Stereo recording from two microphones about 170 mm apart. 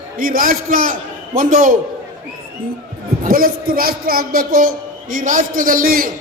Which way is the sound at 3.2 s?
60° right (ahead or behind).